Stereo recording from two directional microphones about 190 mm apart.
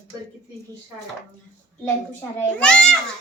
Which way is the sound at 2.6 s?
5° left (ahead or behind).